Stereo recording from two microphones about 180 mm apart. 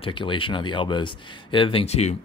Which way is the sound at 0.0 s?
30° left (ahead or behind).